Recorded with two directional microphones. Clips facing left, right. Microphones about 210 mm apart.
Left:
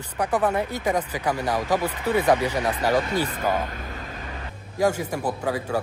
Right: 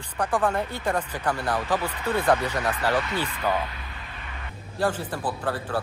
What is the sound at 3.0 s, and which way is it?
Speech, 40° left (ahead or behind).